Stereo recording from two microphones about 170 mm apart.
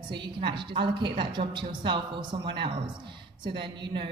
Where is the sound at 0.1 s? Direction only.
30° right (ahead or behind).